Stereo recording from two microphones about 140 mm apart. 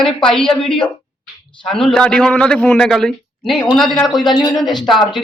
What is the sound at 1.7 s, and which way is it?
A man's voice, 5° left (ahead or behind).